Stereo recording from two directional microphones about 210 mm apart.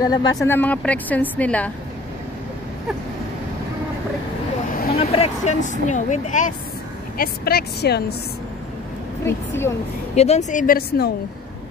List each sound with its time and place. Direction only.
0.0 s a woman's voice: 20° left (ahead or behind)
4.9 s a woman's voice: 30° left (ahead or behind)
7.2 s a woman's voice: 45° left (ahead or behind)
9.2 s a woman's voice: 10° left (ahead or behind)
10.1 s a woman's voice: 30° left (ahead or behind)